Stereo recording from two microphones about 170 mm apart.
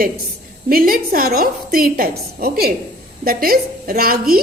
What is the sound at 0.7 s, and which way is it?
A woman's voice, 60° right (ahead or behind).